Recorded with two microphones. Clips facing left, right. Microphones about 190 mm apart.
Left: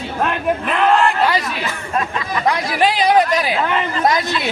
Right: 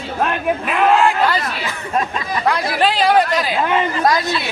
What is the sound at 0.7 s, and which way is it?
Speech, 5° right (ahead or behind).